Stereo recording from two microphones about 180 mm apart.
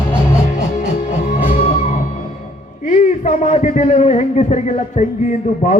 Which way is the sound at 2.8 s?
40° left (ahead or behind).